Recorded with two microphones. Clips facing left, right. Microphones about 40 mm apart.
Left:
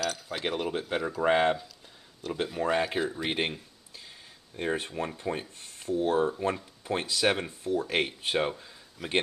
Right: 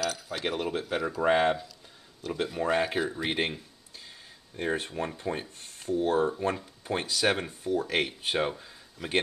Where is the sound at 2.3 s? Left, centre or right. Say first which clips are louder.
Even; centre.